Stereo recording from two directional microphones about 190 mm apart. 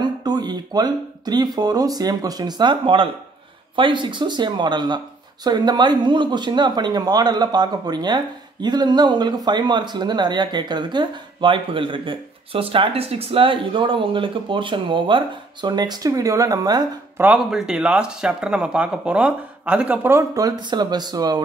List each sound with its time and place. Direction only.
0.0 s speech: 20° right (ahead or behind)
17.2 s speech: 5° right (ahead or behind); by 21.4 s 20° right (ahead or behind)